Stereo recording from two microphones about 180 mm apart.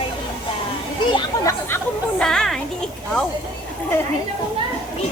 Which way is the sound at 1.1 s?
15° left (ahead or behind).